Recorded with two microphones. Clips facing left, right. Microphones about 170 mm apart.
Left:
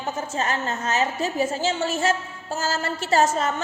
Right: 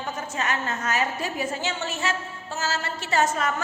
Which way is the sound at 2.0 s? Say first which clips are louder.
Left 5 dB; 45° left (ahead or behind).